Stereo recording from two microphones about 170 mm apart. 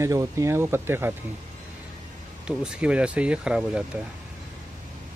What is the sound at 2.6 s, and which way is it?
Speech, 5° right (ahead or behind).